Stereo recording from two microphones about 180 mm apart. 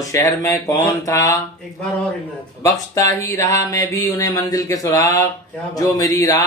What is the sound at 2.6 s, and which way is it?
Speech, 15° left (ahead or behind).